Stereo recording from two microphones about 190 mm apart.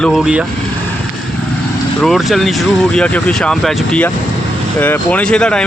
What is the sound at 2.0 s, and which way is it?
Speech, centre (ahead or behind).